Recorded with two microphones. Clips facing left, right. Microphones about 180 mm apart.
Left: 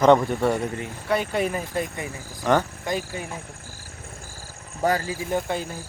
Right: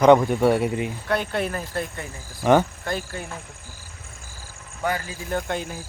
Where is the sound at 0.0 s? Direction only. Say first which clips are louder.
Right 2 dB; centre (ahead or behind).